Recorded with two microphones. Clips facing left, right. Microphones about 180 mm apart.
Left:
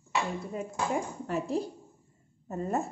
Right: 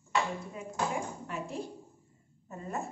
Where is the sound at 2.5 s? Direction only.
40° left (ahead or behind).